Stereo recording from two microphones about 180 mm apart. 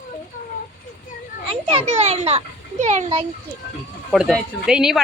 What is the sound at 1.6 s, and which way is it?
A child's voice, 30° right (ahead or behind).